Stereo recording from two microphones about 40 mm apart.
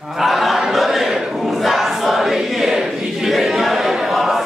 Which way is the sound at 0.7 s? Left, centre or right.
Centre.